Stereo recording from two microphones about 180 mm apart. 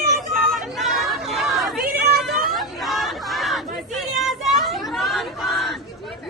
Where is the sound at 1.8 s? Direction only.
60° right (ahead or behind).